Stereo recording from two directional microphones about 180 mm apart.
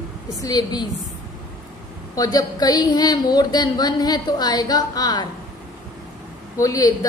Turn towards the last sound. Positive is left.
turn(degrees=20)  # may be behind; listen again after turning